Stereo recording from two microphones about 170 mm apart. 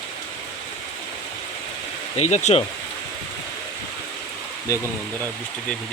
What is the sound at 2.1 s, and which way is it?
Speech, 40° left (ahead or behind).